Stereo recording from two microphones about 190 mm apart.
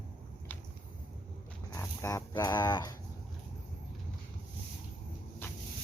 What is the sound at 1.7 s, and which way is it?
Dog, 15° left (ahead or behind).